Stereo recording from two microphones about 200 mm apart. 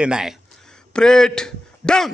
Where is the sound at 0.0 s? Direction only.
5° right (ahead or behind).